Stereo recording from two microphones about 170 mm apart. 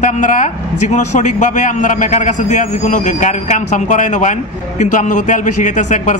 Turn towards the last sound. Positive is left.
turn(degrees=45)  # may be behind; listen again after turning